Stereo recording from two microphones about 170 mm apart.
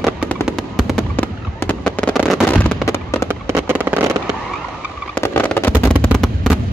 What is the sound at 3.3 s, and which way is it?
Fireworks, 15° right (ahead or behind).